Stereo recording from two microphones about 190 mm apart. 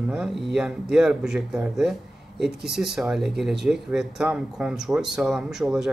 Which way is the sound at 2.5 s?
60° right (ahead or behind).